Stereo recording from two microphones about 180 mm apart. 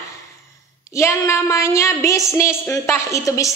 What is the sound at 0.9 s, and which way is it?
A woman's voice, 15° left (ahead or behind).